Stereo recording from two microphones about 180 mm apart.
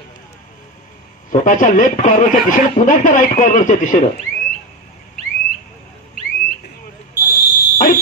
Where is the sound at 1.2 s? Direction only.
45° left (ahead or behind).